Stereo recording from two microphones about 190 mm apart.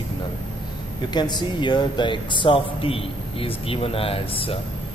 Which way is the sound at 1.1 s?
25° left (ahead or behind).